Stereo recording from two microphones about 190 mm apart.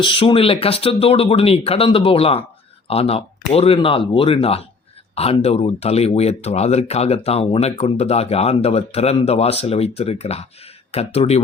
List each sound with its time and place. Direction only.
0.0 s speech: 25° left (ahead or behind)